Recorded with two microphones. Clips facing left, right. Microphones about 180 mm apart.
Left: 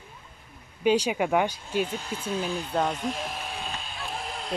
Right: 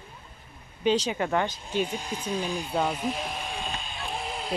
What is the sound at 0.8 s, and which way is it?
Speech, 10° left (ahead or behind).